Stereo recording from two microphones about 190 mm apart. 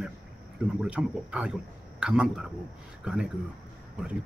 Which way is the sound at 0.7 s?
5° right (ahead or behind).